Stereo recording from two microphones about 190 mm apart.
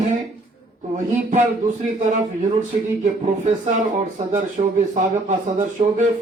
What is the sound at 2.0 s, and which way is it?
Speech, 40° right (ahead or behind).